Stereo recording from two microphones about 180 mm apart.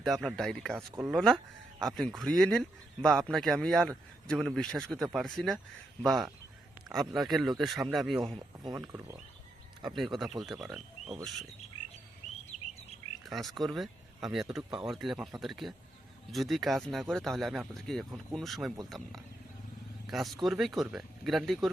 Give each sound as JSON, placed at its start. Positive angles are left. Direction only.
{"t": 0.0, "sound": "speech", "side_deg": 0}
{"t": 8.4, "sound": "speech", "side_deg": -25}
{"t": 8.8, "sound": "speech", "side_deg": -15}
{"t": 9.9, "sound": "speech", "side_deg": 0}
{"t": 13.2, "sound": "speech", "side_deg": 0}